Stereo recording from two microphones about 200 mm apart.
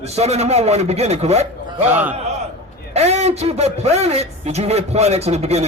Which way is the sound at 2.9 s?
30° right (ahead or behind).